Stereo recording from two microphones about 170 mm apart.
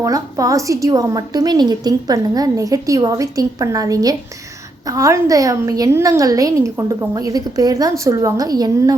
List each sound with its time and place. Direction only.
0.0 s a woman's voice: 20° right (ahead or behind)